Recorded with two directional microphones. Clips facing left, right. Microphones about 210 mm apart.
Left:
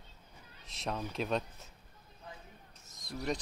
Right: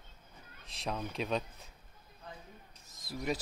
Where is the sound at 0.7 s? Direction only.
Centre (ahead or behind).